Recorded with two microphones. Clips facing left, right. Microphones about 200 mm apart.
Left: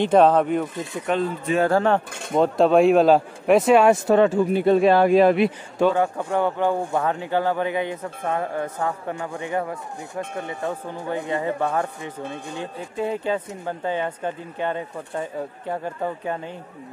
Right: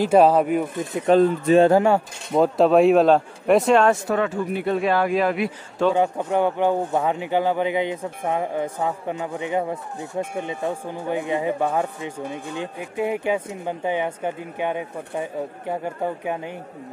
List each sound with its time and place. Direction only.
0.0 s speech: 10° right (ahead or behind)
1.1 s speech: 35° right (ahead or behind)
1.7 s a man's voice: 10° right (ahead or behind); by 3.9 s 5° left (ahead or behind)
3.9 s speech: 30° left (ahead or behind)
5.8 s a man's voice: 15° left (ahead or behind)
6.3 s speech: 15° right (ahead or behind)